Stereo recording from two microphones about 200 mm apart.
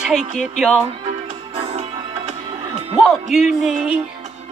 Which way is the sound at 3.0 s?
Centre (ahead or behind).